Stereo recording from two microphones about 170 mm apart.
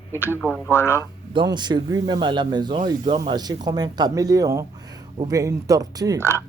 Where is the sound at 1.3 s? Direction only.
25° right (ahead or behind).